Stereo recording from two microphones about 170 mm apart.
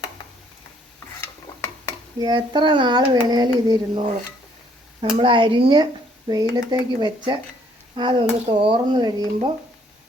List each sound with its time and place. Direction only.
1.2 s stir: 15° left (ahead or behind)
2.1 s child singing: 25° right (ahead or behind)
5.1 s speech: 30° right (ahead or behind)
6.5 s child singing: 25° right (ahead or behind)